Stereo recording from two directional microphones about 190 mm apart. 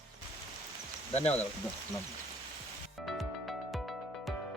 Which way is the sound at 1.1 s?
30° left (ahead or behind).